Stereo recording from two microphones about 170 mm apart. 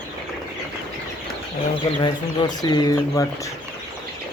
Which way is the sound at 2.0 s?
25° left (ahead or behind).